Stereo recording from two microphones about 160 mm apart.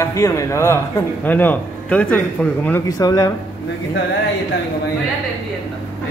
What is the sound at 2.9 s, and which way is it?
Speech, 25° left (ahead or behind).